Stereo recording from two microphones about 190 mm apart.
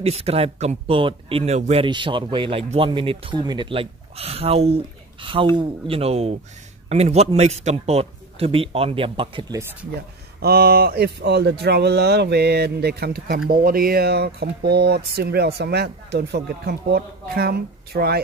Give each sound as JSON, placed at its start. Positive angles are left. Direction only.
{"t": 0.0, "sound": "speech", "side_deg": -30}
{"t": 10.4, "sound": "speech", "side_deg": -55}